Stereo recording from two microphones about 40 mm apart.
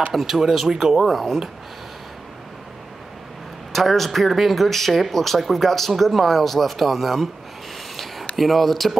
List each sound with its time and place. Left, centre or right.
0.1 s speech: centre
3.7 s speech: centre
7.9 s a sound: centre
8.4 s speech: centre